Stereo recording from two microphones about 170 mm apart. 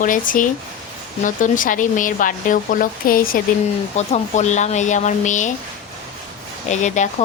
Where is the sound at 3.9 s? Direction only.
40° left (ahead or behind).